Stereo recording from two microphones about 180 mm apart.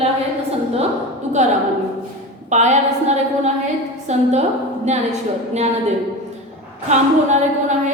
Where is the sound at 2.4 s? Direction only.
40° right (ahead or behind).